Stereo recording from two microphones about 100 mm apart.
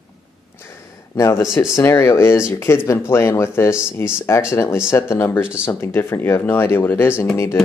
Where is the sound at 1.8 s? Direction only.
30° left (ahead or behind).